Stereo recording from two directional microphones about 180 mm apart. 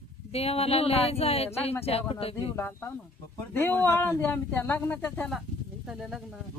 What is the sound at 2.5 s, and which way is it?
Speech, 10° left (ahead or behind).